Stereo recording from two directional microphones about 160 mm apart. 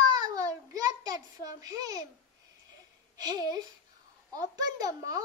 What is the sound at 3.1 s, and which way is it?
A child's voice, 25° right (ahead or behind).